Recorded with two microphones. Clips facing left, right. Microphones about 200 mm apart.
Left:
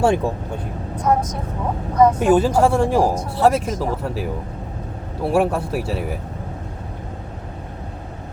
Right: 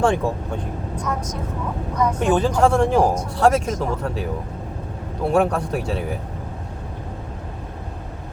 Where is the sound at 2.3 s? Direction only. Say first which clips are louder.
Left 2 dB; 5° left (ahead or behind).